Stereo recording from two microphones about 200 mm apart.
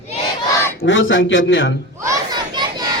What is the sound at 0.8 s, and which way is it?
Speech, 70° left (ahead or behind).